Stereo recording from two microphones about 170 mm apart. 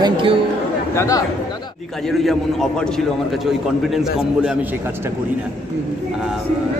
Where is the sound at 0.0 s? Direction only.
30° right (ahead or behind).